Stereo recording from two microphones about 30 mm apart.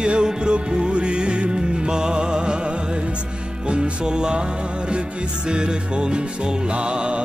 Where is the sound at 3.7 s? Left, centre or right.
Right.